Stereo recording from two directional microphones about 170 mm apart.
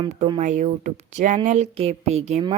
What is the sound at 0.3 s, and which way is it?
A child's voice, 45° right (ahead or behind).